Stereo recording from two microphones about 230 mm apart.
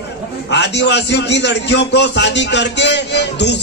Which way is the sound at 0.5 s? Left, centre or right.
Left.